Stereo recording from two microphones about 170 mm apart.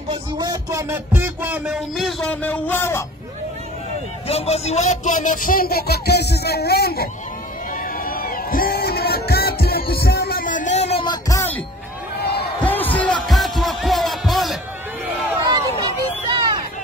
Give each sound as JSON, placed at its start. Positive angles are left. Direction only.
{"t": 0.1, "sound": "a sound", "side_deg": -20}
{"t": 4.3, "sound": "music", "side_deg": 35}
{"t": 7.7, "sound": "music", "side_deg": 55}
{"t": 11.1, "sound": "music", "side_deg": 20}
{"t": 12.2, "sound": "slam", "side_deg": 70}
{"t": 12.6, "sound": "music", "side_deg": 10}
{"t": 15.3, "sound": "a sound", "side_deg": -20}